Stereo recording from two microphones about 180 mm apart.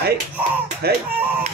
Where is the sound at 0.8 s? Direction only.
60° right (ahead or behind).